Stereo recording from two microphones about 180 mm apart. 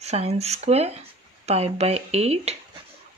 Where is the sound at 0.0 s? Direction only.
35° right (ahead or behind).